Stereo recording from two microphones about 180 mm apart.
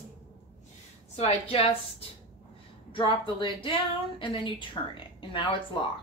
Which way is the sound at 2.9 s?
30° left (ahead or behind).